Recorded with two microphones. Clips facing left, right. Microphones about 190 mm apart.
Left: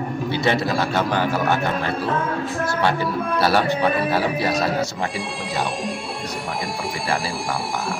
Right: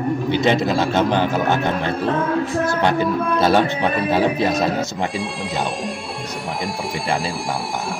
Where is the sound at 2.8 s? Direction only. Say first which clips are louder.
Right 1 dB; 20° right (ahead or behind).